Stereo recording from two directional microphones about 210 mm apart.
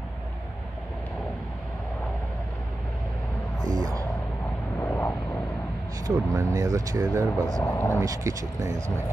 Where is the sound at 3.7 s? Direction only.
20° right (ahead or behind).